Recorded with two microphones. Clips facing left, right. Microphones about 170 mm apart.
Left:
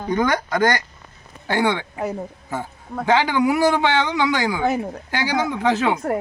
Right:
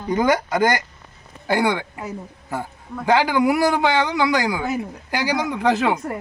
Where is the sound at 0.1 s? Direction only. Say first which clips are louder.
Right 2 dB; 10° right (ahead or behind).